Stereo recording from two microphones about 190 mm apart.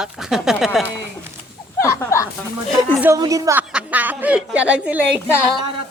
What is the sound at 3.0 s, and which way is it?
A woman's voice, 20° right (ahead or behind).